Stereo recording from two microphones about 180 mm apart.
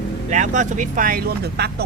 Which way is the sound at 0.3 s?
40° right (ahead or behind).